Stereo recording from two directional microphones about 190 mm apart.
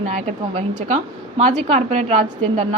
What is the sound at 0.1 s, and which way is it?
A woman's voice, 35° right (ahead or behind).